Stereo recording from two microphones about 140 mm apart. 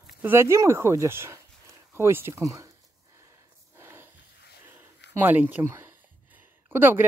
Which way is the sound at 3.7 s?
15° right (ahead or behind).